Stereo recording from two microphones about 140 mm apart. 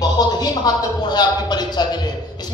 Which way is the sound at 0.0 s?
30° left (ahead or behind).